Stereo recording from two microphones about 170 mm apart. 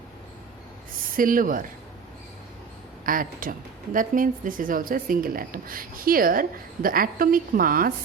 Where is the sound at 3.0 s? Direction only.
55° right (ahead or behind).